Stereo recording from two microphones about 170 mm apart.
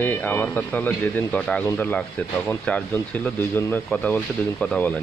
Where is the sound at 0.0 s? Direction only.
10° left (ahead or behind).